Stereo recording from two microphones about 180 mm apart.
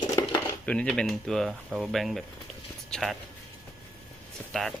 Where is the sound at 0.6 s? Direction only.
5° left (ahead or behind).